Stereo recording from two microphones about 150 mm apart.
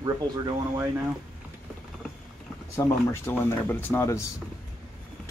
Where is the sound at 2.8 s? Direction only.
20° left (ahead or behind).